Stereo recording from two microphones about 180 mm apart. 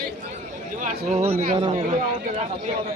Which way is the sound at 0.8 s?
45° right (ahead or behind).